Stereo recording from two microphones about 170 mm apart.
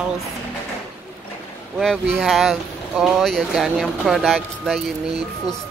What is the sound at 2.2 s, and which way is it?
Speech, centre (ahead or behind).